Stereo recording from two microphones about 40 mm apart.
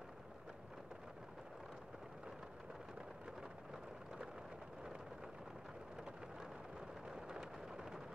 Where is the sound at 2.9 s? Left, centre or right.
Right.